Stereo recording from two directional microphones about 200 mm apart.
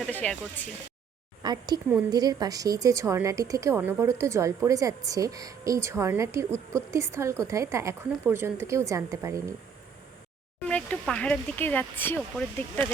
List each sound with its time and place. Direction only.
0.1 s speech: 10° left (ahead or behind)
1.4 s a woman's voice: 20° right (ahead or behind)
10.7 s speech: 5° left (ahead or behind)